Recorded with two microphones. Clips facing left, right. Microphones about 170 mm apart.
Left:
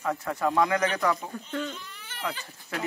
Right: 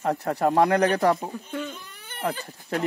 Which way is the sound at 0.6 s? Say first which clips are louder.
Right 6 dB; 60° right (ahead or behind).